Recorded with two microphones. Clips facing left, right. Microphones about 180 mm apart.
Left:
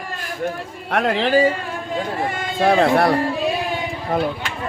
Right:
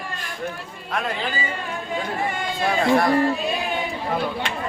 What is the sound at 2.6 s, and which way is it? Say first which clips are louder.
Speech: left 4 dB; 65° left (ahead or behind).